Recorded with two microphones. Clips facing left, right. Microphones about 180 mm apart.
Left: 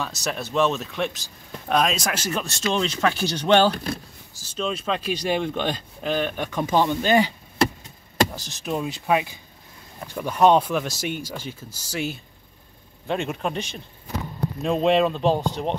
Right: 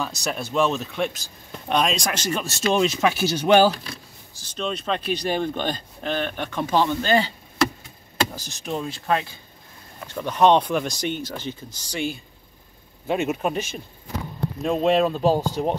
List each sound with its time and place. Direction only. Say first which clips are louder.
0.0 s speech: right 1 dB; centre (ahead or behind)
2.7 s speech: right 3 dB; 10° right (ahead or behind)
3.7 s speech: left 8 dB; 55° left (ahead or behind)
4.6 s speech: even; 5° left (ahead or behind)
5.4 s speech: even; 5° right (ahead or behind)
5.7 s speech: left 1 dB; 10° left (ahead or behind)
8.4 s speech: left 1 dB; centre (ahead or behind)
8.8 s speech: left 2 dB; 15° left (ahead or behind); by 15.7 s 5° right (ahead or behind)